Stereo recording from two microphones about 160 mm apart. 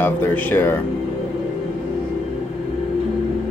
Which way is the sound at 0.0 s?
15° left (ahead or behind).